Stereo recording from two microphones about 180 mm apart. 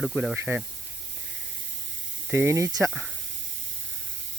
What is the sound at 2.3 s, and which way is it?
Speech, 15° right (ahead or behind).